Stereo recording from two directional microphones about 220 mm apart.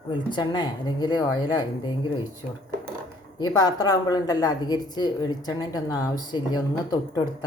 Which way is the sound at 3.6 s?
15° left (ahead or behind).